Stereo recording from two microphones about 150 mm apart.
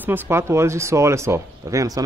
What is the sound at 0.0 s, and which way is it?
Speech, 15° right (ahead or behind).